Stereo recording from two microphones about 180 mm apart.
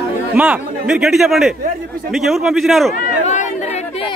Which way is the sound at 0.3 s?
5° right (ahead or behind).